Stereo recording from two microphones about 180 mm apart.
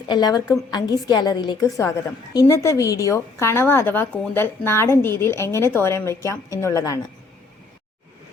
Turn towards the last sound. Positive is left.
turn(degrees=15)  # may be behind; listen again after turning